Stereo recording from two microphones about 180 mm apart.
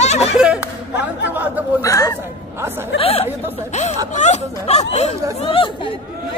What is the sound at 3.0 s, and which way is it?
Speech, 35° left (ahead or behind).